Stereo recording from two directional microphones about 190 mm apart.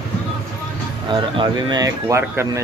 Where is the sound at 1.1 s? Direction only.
25° right (ahead or behind).